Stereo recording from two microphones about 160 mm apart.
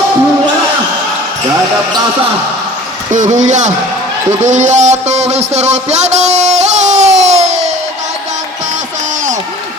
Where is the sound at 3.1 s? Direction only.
50° right (ahead or behind).